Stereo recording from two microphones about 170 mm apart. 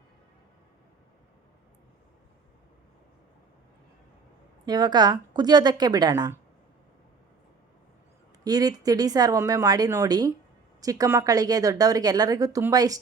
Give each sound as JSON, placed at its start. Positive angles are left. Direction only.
{"t": 4.6, "sound": "a woman's voice", "side_deg": -25}
{"t": 8.4, "sound": "a woman's voice", "side_deg": -20}